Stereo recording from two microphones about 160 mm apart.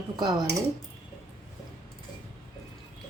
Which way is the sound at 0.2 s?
25° right (ahead or behind).